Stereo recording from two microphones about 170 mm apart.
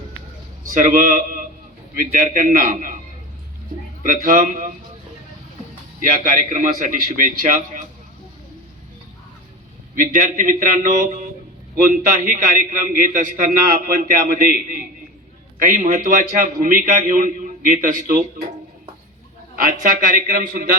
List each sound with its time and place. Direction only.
0.7 s a man's voice: 50° right (ahead or behind)
4.0 s a man's voice: 55° right (ahead or behind)
6.0 s a man's voice: 55° right (ahead or behind)
9.9 s a man's voice: 55° right (ahead or behind)
11.9 s a man's voice: 50° right (ahead or behind)
19.5 s a man's voice: 50° right (ahead or behind)